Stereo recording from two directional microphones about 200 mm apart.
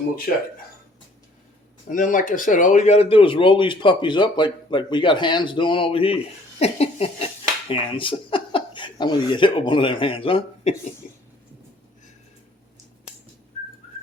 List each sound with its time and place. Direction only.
1.9 s speech: 40° left (ahead or behind)
11.0 s cough: 40° left (ahead or behind)
13.5 s whistling: 35° left (ahead or behind)